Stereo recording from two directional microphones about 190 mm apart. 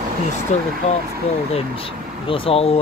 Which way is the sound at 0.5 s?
35° left (ahead or behind).